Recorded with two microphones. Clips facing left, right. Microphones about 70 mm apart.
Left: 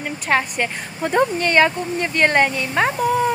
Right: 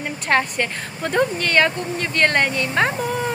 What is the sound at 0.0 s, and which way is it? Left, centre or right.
Speech, centre.